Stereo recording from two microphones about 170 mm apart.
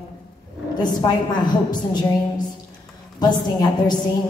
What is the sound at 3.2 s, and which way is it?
Speech, 25° left (ahead or behind).